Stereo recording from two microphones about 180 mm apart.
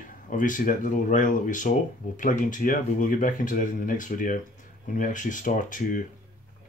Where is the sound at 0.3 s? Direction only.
50° left (ahead or behind).